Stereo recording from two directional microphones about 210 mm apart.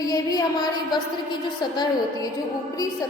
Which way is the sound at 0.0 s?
15° left (ahead or behind).